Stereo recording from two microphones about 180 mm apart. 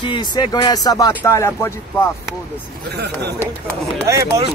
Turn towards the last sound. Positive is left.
turn(degrees=-15)  # may be behind; listen again after turning